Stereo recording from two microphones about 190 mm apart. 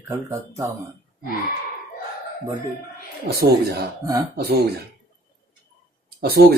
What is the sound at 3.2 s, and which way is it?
Speech, 55° right (ahead or behind).